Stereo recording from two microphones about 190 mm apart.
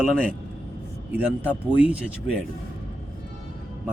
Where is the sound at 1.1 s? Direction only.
5° right (ahead or behind).